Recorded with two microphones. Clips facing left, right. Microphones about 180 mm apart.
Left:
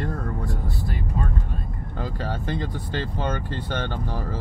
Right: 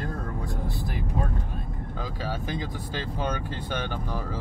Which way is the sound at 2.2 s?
10° right (ahead or behind).